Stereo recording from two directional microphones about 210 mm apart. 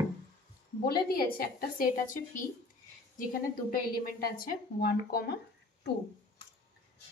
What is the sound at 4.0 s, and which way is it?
A woman's voice, 45° left (ahead or behind).